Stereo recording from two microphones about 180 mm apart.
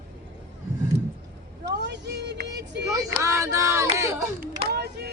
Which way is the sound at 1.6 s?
70° right (ahead or behind).